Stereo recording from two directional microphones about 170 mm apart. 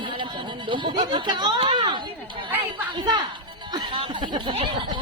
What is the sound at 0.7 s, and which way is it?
Speech, 30° right (ahead or behind).